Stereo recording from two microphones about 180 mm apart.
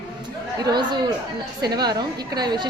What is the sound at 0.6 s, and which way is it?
A woman's voice, 25° right (ahead or behind).